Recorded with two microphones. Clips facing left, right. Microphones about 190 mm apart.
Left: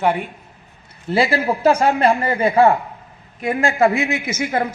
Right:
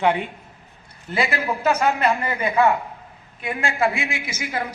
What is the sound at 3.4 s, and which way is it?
Speech, 45° left (ahead or behind).